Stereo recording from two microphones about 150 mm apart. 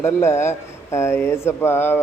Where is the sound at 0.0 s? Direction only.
15° left (ahead or behind).